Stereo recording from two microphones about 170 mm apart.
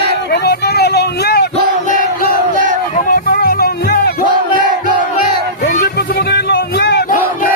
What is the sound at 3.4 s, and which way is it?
Music, 65° left (ahead or behind).